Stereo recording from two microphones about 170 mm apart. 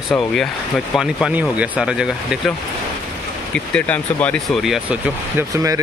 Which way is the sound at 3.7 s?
10° left (ahead or behind).